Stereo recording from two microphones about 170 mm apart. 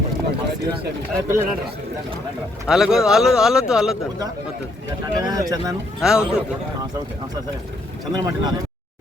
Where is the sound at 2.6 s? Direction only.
5° right (ahead or behind).